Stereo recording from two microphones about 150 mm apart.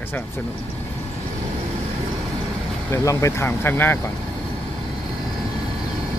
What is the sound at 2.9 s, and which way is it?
Speech, 20° left (ahead or behind).